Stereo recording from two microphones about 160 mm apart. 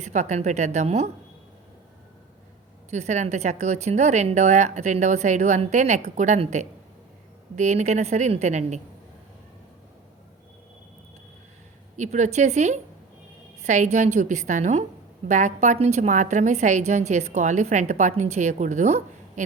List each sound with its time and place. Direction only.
0.0 s a woman's voice: 45° right (ahead or behind)
2.9 s a woman's voice: 45° right (ahead or behind)
11.9 s a woman's voice: 50° right (ahead or behind)